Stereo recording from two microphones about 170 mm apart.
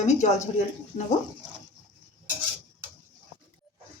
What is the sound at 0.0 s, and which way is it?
Speech, 40° left (ahead or behind).